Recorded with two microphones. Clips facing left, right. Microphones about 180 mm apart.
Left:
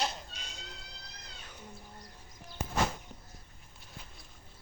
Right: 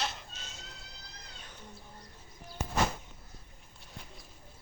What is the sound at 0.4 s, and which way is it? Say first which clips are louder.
Cat: even; 15° left (ahead or behind).